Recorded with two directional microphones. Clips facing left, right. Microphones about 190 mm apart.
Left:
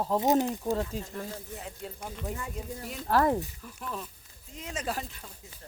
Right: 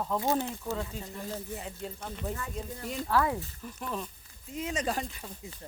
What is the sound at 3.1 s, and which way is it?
Speech, 40° left (ahead or behind).